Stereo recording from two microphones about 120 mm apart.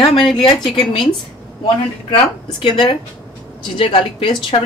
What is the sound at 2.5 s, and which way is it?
A woman's voice, 45° left (ahead or behind).